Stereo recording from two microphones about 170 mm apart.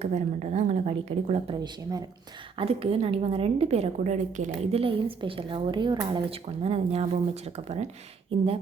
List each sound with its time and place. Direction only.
0.0 s a woman's voice: 40° right (ahead or behind)
1.6 s speech: 20° right (ahead or behind)
2.6 s a woman's voice: 35° right (ahead or behind)